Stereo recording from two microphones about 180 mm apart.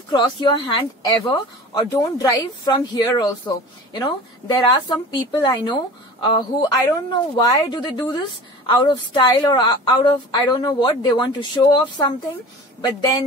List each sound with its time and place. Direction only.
0.1 s a woman's voice: 25° left (ahead or behind)